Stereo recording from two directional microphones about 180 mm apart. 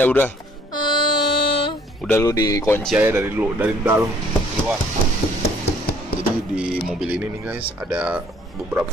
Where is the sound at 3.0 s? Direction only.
10° right (ahead or behind).